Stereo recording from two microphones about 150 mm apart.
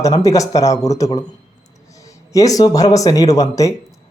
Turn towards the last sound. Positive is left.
turn(degrees=20)  # may be behind; listen again after turning